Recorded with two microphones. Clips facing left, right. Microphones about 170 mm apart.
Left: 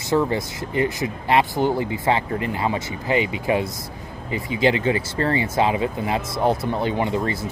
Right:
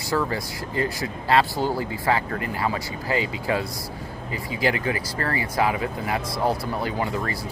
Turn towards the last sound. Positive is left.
turn(degrees=25)  # may be behind; listen again after turning